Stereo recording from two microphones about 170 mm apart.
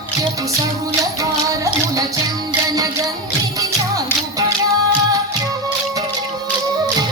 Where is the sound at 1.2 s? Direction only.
20° right (ahead or behind).